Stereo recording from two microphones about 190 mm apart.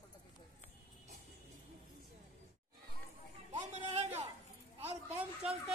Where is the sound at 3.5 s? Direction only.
35° right (ahead or behind).